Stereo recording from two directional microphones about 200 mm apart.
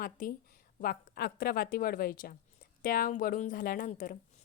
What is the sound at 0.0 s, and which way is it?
A woman's voice, 45° left (ahead or behind).